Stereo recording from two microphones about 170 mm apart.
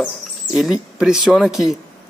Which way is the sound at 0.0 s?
Centre (ahead or behind).